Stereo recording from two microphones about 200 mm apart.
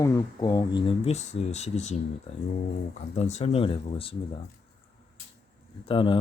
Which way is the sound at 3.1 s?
30° left (ahead or behind).